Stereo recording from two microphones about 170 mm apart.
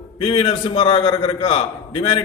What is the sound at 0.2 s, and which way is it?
A man's voice, 35° left (ahead or behind).